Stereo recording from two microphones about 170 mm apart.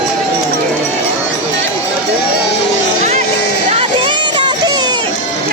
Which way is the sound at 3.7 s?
30° right (ahead or behind).